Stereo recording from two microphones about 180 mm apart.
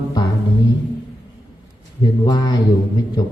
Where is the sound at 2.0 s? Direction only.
20° left (ahead or behind).